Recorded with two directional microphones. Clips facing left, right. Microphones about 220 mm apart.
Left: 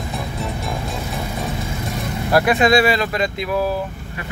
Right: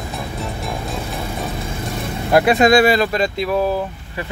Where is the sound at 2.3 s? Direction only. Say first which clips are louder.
Right 2 dB; 25° right (ahead or behind).